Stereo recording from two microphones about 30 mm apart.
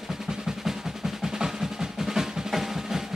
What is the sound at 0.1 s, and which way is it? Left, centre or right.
Percussion, centre.